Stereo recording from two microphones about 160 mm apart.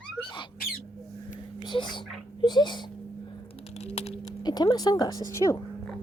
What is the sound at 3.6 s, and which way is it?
Music, 40° left (ahead or behind).